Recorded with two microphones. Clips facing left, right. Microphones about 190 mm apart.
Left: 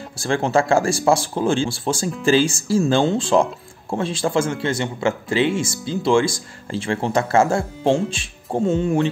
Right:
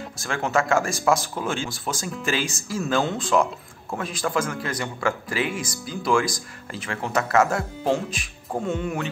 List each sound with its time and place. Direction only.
0.2 s speech: 30° left (ahead or behind)